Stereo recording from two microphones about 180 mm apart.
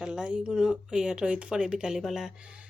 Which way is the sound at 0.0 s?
5° right (ahead or behind).